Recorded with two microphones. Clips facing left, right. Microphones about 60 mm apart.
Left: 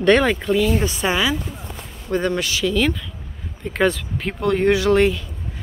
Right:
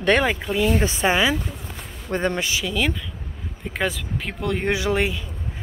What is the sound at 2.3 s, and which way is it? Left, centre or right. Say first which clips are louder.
Speech: left 4 dB; right.